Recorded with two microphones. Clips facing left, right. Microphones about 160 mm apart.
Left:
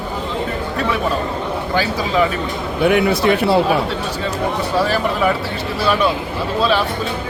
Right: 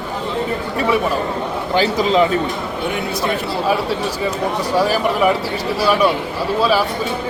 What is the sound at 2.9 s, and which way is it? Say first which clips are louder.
Speech: left 8 dB; 80° left.